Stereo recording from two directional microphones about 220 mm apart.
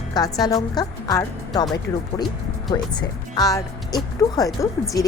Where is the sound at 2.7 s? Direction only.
20° left (ahead or behind).